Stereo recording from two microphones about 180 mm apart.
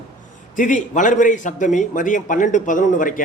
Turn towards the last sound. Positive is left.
turn(degrees=45)  # may be behind; listen again after turning